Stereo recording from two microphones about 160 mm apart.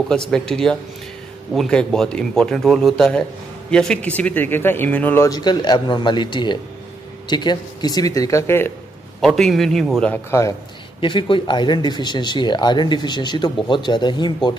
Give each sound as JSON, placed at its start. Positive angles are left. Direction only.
{"t": 0.1, "sound": "speech", "side_deg": 5}
{"t": 9.2, "sound": "speech", "side_deg": 0}
{"t": 11.0, "sound": "speech", "side_deg": 30}